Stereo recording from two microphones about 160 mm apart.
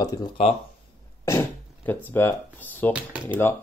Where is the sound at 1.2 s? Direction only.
15° left (ahead or behind).